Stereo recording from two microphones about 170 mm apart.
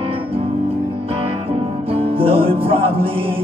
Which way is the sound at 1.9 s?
35° right (ahead or behind).